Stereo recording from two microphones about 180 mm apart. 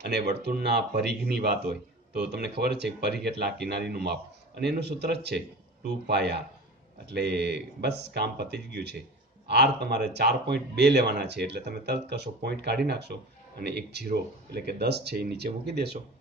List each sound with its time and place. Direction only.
0.0 s speech: 65° right (ahead or behind)